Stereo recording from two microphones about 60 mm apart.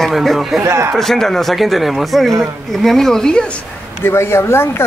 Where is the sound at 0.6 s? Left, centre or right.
Right.